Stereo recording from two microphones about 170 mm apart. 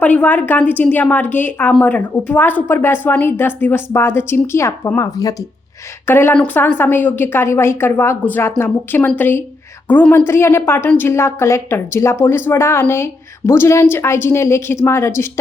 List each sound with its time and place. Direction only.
0.0 s a woman's voice: 10° left (ahead or behind)